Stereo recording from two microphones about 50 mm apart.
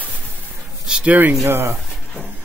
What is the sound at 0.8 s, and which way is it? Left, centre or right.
Speech, centre.